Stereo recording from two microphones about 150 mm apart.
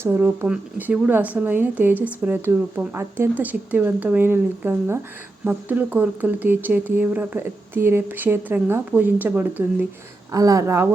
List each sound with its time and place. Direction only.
0.0 s speech: 15° right (ahead or behind)
10.3 s speech: 20° right (ahead or behind)